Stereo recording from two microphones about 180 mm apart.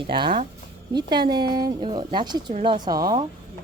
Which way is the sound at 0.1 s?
30° right (ahead or behind).